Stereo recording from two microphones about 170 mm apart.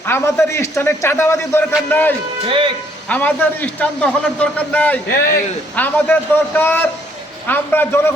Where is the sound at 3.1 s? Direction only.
10° left (ahead or behind).